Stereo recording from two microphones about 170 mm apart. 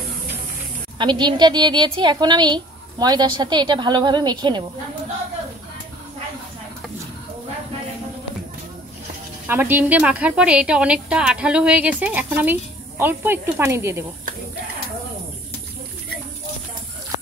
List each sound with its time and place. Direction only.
0.9 s a woman's voice: 25° right (ahead or behind)
9.5 s a woman's voice: 10° right (ahead or behind)